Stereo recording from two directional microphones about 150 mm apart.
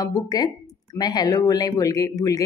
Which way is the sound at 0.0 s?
25° left (ahead or behind).